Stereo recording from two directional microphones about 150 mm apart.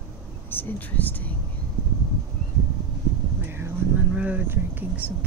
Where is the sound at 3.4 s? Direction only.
15° right (ahead or behind).